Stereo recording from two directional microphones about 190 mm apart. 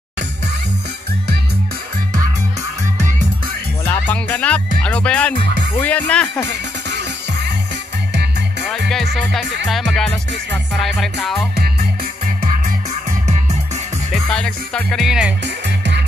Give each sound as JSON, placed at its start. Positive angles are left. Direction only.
{"t": 3.8, "sound": "music", "side_deg": 10}
{"t": 4.8, "sound": "speech", "side_deg": 5}
{"t": 8.1, "sound": "music", "side_deg": -60}
{"t": 9.7, "sound": "music", "side_deg": 0}
{"t": 14.3, "sound": "music", "side_deg": 5}